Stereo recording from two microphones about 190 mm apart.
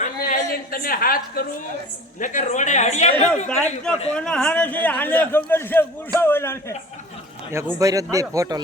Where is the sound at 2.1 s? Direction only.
40° left (ahead or behind).